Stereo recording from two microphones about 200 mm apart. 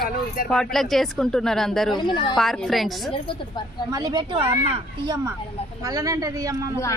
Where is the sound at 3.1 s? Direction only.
25° left (ahead or behind).